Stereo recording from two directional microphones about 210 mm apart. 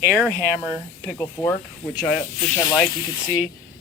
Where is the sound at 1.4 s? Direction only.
20° left (ahead or behind).